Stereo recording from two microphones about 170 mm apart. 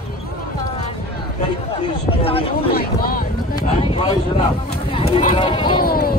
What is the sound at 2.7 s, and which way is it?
Speech, 60° left (ahead or behind).